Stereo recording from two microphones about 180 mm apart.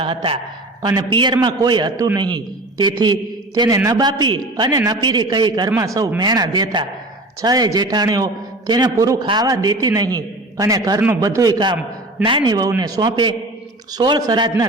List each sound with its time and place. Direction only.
0.0 s a man's voice: 30° right (ahead or behind)